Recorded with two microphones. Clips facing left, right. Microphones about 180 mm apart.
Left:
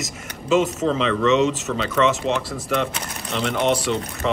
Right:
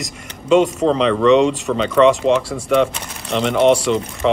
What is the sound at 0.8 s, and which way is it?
Speech, 35° right (ahead or behind).